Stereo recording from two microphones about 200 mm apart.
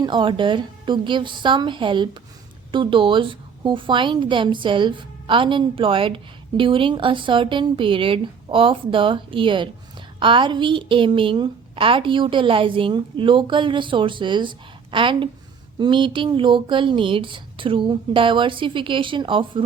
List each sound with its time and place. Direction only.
0.0 s a woman's voice: 25° right (ahead or behind)